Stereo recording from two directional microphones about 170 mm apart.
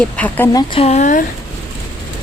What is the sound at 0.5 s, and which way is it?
Speech, 35° left (ahead or behind).